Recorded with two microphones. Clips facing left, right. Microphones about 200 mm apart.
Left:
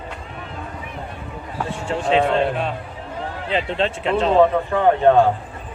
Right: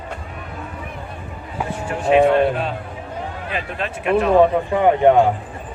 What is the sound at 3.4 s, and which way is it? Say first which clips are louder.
Speech: left 7 dB; 25° left (ahead or behind).